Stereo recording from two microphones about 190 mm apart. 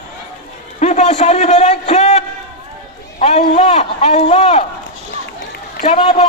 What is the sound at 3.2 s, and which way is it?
A man's voice, 35° left (ahead or behind).